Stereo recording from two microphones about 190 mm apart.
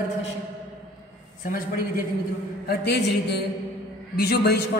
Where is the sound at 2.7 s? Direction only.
60° left (ahead or behind).